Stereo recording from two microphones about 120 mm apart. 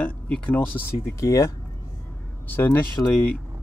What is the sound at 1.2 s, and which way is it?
Speech, 25° left (ahead or behind).